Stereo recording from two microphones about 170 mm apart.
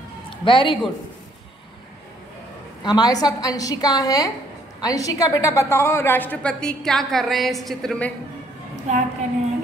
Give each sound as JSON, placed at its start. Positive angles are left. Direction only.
{"t": 0.5, "sound": "a woman's voice", "side_deg": 30}
{"t": 2.8, "sound": "a woman's voice", "side_deg": 20}
{"t": 8.9, "sound": "a woman's voice", "side_deg": -45}